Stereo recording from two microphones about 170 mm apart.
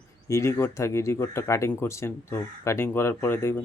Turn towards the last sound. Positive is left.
turn(degrees=15)  # may be behind; listen again after turning